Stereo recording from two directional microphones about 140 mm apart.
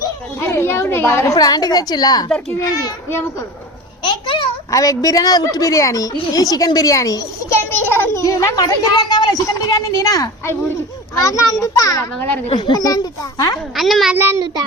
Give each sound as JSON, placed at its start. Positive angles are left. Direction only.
{"t": 0.3, "sound": "a woman's voice", "side_deg": 15}
{"t": 4.0, "sound": "a child's voice", "side_deg": 35}
{"t": 4.7, "sound": "a child's voice", "side_deg": 25}
{"t": 12.5, "sound": "a child's voice", "side_deg": 40}
{"t": 13.7, "sound": "a child's voice", "side_deg": 0}
{"t": 14.2, "sound": "child singing", "side_deg": -15}